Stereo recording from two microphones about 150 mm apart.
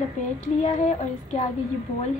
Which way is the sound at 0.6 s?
50° left (ahead or behind).